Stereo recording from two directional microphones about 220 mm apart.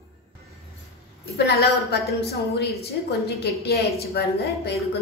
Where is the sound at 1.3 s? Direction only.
45° left (ahead or behind).